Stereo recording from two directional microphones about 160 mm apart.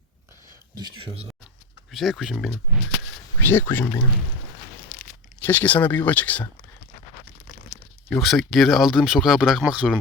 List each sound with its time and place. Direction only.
0.8 s speech: 30° right (ahead or behind)
1.9 s speech: centre (ahead or behind)
3.5 s speech: 15° left (ahead or behind)
4.9 s tearing: 55° left (ahead or behind)
5.5 s speech: 10° left (ahead or behind)
8.1 s speech: centre (ahead or behind)